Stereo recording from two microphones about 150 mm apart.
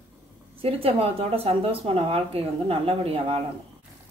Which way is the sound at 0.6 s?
40° right (ahead or behind).